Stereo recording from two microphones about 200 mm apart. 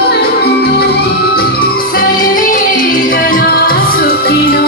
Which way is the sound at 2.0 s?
40° left (ahead or behind).